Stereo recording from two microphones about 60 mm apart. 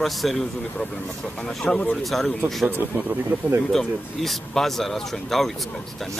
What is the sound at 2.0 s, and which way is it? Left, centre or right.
Speech, centre.